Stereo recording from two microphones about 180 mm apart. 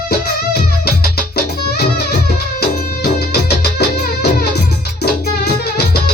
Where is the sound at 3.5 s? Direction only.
65° left (ahead or behind).